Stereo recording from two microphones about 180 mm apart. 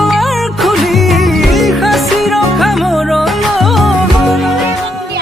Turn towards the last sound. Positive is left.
turn(degrees=0)  # may be behind; listen again after turning